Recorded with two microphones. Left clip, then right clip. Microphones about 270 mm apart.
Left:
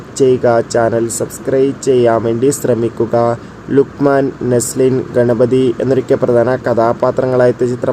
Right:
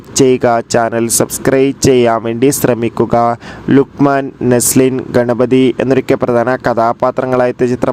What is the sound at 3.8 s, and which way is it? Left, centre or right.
Speech, right.